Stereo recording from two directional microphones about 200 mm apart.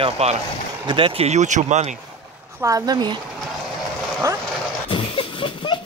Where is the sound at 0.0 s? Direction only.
30° right (ahead or behind).